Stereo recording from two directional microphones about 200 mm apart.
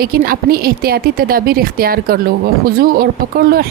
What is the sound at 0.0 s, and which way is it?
A woman's voice, 50° right (ahead or behind).